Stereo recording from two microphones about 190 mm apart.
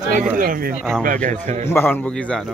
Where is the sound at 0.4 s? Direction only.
50° right (ahead or behind).